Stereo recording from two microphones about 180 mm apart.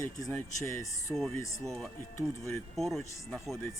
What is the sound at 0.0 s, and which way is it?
Speech, 15° left (ahead or behind).